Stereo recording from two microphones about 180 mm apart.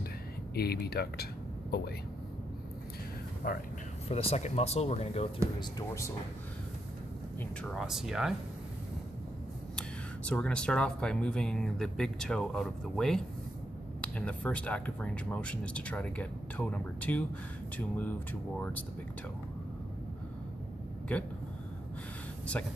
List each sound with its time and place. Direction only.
0.6 s speech: 60° left (ahead or behind)
3.4 s speech: 55° left (ahead or behind)
4.1 s speech: 35° left (ahead or behind)
5.6 s speech: 15° left (ahead or behind)
7.7 s speech: centre (ahead or behind)
9.8 s speech: 5° left (ahead or behind)
22.6 s speech: 5° left (ahead or behind)